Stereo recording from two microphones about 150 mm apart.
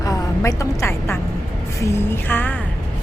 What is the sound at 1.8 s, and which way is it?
Music, 15° left (ahead or behind).